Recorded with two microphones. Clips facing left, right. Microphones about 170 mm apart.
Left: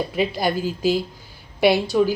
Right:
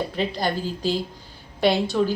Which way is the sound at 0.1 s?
10° left (ahead or behind).